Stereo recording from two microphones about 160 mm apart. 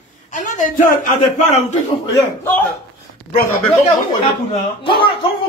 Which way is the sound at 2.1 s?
15° left (ahead or behind).